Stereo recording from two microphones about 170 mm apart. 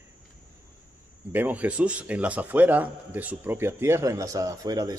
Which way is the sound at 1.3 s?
10° right (ahead or behind).